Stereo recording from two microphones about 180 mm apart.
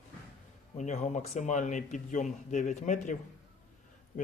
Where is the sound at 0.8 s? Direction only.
40° left (ahead or behind).